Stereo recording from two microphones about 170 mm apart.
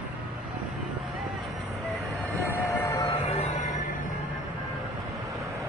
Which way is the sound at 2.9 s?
25° left (ahead or behind).